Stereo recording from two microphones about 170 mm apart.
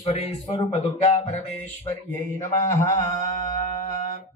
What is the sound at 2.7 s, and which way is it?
Mantra, 15° left (ahead or behind).